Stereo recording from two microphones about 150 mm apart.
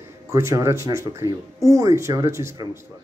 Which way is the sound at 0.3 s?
20° right (ahead or behind).